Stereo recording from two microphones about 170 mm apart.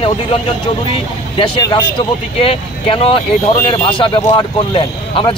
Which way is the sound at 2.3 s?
35° left (ahead or behind).